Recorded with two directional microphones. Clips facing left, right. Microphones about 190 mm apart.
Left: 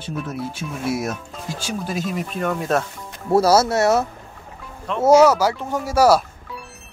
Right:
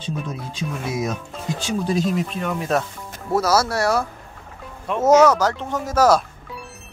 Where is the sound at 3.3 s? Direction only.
30° left (ahead or behind).